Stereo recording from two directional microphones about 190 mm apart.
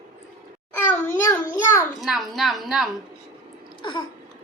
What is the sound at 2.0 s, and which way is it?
Speech, centre (ahead or behind).